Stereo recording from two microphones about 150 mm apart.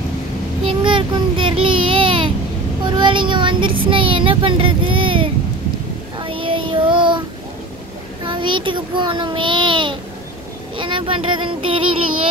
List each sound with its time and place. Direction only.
0.7 s child singing: 35° right (ahead or behind)
3.9 s a child's voice: 35° right (ahead or behind)
6.1 s child singing: 35° right (ahead or behind)
8.3 s child singing: 35° right (ahead or behind)